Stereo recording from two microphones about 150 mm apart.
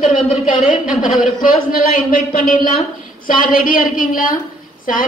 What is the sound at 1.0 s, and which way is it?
A woman's voice, 70° left (ahead or behind).